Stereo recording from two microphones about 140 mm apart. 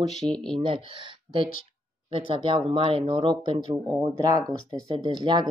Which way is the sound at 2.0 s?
40° right (ahead or behind).